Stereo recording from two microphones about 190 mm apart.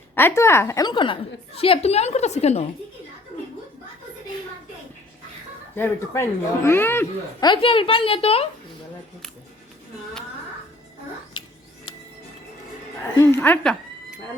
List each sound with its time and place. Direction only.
0.2 s a woman's voice: 10° left (ahead or behind); by 2.6 s 35° left (ahead or behind)
5.7 s speech: 10° left (ahead or behind)
7.4 s a woman's voice: 25° left (ahead or behind)
13.1 s speech: 15° left (ahead or behind)